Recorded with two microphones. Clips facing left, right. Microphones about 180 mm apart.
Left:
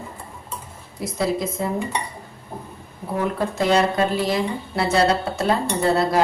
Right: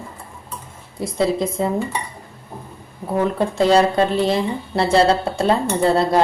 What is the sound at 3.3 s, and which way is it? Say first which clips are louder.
Speech: right 4 dB; 30° right (ahead or behind).